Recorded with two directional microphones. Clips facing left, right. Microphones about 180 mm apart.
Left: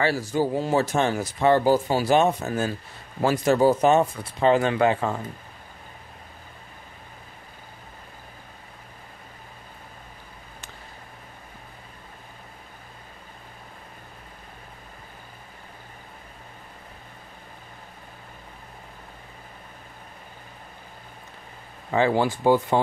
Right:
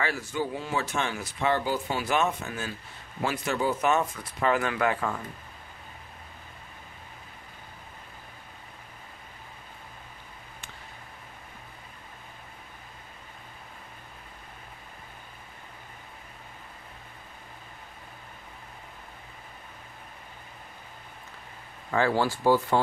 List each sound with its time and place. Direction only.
0.0 s speech: 35° left (ahead or behind)
21.9 s speech: 20° left (ahead or behind)